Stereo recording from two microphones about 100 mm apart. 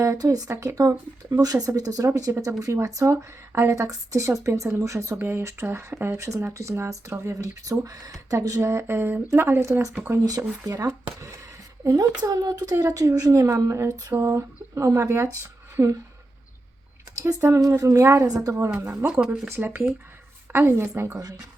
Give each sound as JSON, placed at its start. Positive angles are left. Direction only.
{"t": 0.0, "sound": "speech", "side_deg": -35}
{"t": 0.5, "sound": "speech", "side_deg": -25}
{"t": 1.6, "sound": "speech", "side_deg": -35}
{"t": 14.1, "sound": "speech", "side_deg": -25}
{"t": 17.5, "sound": "speech", "side_deg": -30}
{"t": 18.7, "sound": "speech", "side_deg": -15}
{"t": 21.2, "sound": "speech", "side_deg": -40}